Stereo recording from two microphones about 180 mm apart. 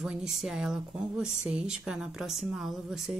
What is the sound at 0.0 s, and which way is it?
A woman's voice, 5° right (ahead or behind).